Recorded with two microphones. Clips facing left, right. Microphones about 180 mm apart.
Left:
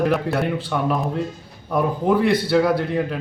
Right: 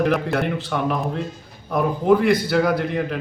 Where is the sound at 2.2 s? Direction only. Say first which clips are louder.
Even; 30° left (ahead or behind).